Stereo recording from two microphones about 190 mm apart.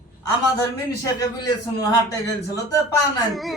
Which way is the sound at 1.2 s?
20° left (ahead or behind).